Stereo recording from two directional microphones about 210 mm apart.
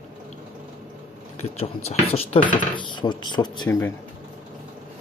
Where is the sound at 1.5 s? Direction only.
30° left (ahead or behind); by 3.9 s 15° left (ahead or behind).